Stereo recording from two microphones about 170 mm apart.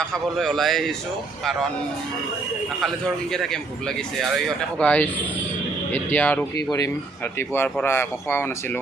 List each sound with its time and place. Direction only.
0.0 s speech: centre (ahead or behind)
3.3 s speech: centre (ahead or behind)
6.6 s speech: 20° left (ahead or behind)